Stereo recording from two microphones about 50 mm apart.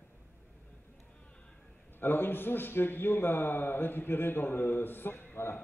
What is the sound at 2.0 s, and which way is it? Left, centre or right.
A man's voice, left.